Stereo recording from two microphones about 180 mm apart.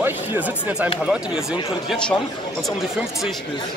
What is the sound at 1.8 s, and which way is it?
Speech, 5° left (ahead or behind).